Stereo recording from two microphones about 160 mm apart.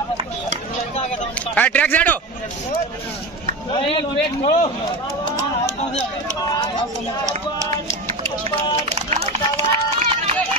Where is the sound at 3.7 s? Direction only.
35° left (ahead or behind).